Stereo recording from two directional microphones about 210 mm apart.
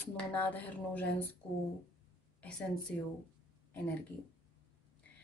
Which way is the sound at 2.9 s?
5° left (ahead or behind).